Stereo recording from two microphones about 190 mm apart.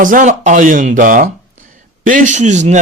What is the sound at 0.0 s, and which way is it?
A man's voice, 45° right (ahead or behind).